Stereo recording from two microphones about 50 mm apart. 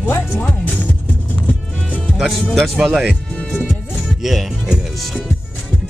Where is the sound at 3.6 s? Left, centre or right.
Centre.